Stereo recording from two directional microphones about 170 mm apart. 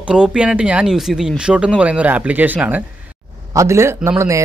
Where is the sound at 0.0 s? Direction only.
5° right (ahead or behind).